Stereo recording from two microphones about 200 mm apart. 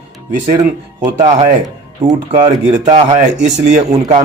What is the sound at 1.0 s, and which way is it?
Speech, 25° right (ahead or behind).